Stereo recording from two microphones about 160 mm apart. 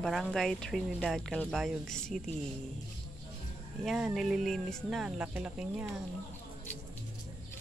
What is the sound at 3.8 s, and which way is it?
Speech, 5° right (ahead or behind).